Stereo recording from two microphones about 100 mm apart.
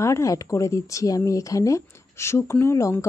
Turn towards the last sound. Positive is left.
turn(degrees=30)  # may be behind; listen again after turning